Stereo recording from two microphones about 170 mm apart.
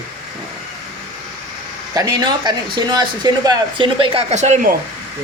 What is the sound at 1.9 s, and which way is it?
Speech, 25° right (ahead or behind).